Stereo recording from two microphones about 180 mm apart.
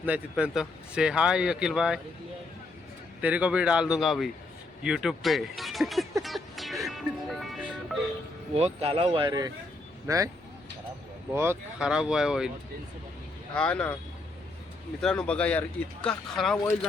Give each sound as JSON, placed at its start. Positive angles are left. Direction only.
{"t": 0.0, "sound": "speech", "side_deg": -5}
{"t": 3.2, "sound": "speech", "side_deg": -5}
{"t": 6.2, "sound": "music", "side_deg": 0}
{"t": 8.5, "sound": "speech", "side_deg": -35}
{"t": 11.3, "sound": "speech", "side_deg": -10}
{"t": 13.5, "sound": "speech", "side_deg": 5}
{"t": 15.0, "sound": "speech", "side_deg": 5}